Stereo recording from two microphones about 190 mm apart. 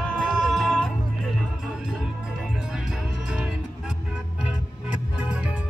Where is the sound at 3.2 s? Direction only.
Centre (ahead or behind).